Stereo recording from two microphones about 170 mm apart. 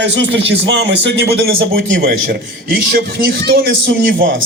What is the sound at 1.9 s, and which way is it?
A man's voice, 70° right (ahead or behind).